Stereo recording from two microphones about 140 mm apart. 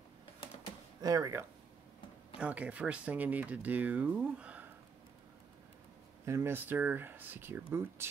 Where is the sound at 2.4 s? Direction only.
10° right (ahead or behind).